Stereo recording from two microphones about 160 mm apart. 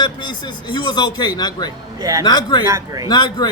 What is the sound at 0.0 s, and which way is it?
Speech, 30° left (ahead or behind).